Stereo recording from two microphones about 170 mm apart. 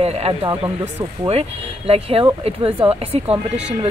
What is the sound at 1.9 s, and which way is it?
A woman's voice, 35° right (ahead or behind).